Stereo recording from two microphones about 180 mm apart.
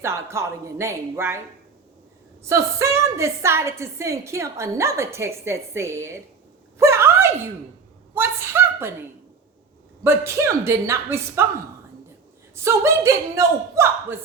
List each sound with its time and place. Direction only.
0.0 s a woman's voice: 15° right (ahead or behind)
2.5 s a woman's voice: 15° right (ahead or behind)
6.7 s a sound: 15° right (ahead or behind)
8.1 s a woman's voice: 15° right (ahead or behind)
12.5 s a woman's voice: 15° right (ahead or behind)